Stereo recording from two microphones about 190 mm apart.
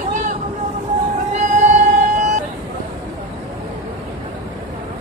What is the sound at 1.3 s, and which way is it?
Music, 40° right (ahead or behind).